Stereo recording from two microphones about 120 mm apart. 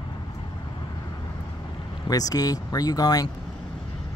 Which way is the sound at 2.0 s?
30° left (ahead or behind).